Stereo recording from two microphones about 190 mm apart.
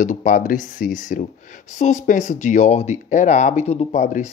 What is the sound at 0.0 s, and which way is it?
Speech, 40° left (ahead or behind).